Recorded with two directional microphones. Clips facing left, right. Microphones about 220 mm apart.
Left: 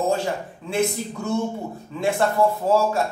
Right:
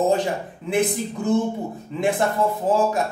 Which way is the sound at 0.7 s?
15° right (ahead or behind).